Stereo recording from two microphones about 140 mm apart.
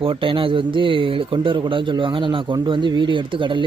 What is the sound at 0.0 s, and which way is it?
Speech, 40° right (ahead or behind).